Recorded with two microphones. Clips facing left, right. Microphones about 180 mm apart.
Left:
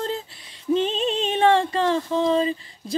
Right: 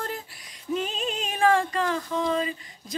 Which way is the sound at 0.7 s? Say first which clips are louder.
Left 6 dB; 30° left (ahead or behind).